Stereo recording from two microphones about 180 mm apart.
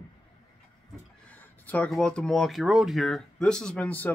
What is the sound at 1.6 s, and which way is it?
Speech, 10° left (ahead or behind).